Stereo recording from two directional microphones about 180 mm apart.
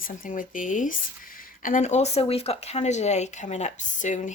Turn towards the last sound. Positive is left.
turn(degrees=45)  # may be behind; listen again after turning